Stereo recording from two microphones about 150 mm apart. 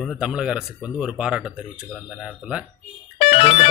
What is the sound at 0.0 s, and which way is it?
Speech, 5° right (ahead or behind).